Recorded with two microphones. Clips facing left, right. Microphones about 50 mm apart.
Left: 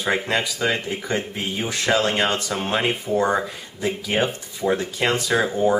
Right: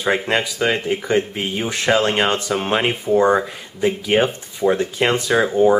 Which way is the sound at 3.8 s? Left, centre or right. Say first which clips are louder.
Right 5 dB; right.